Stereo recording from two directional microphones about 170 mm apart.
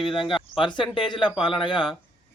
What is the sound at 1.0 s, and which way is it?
Speech, 30° left (ahead or behind).